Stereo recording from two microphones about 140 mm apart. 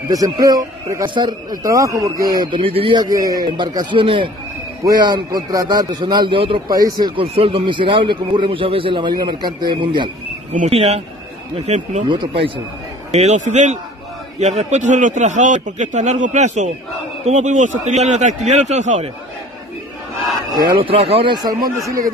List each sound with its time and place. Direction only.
0.1 s a man's voice: 25° right (ahead or behind)
6.7 s a man's voice: 25° right (ahead or behind)
10.7 s speech: 45° right (ahead or behind)
12.1 s a man's voice: 35° right (ahead or behind)
13.1 s a man's voice: 55° right (ahead or behind)
20.6 s a man's voice: 40° right (ahead or behind)